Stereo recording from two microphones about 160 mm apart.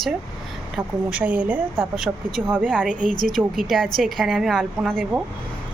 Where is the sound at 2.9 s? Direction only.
55° right (ahead or behind).